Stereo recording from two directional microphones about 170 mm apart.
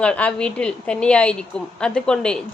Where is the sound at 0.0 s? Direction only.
5° left (ahead or behind).